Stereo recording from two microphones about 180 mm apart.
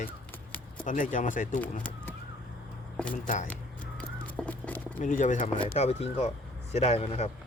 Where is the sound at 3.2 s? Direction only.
45° left (ahead or behind).